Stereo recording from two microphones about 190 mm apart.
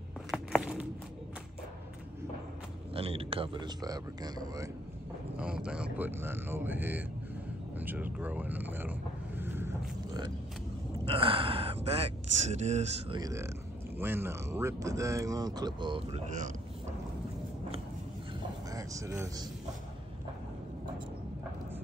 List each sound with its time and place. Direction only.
0.3 s a sound: 5° right (ahead or behind)
2.9 s speech: 30° right (ahead or behind)
5.4 s speech: 5° right (ahead or behind)
7.8 s vehicle: 10° right (ahead or behind)
11.1 s speech: 30° right (ahead or behind)
13.2 s speech: 15° right (ahead or behind)
18.7 s speech: 15° right (ahead or behind)